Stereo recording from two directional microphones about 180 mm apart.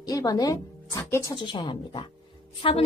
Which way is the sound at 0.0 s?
20° left (ahead or behind).